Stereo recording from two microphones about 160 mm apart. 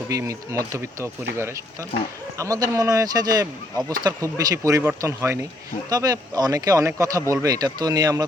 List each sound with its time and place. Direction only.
0.1 s speech: 20° right (ahead or behind)
2.4 s speech: 20° right (ahead or behind)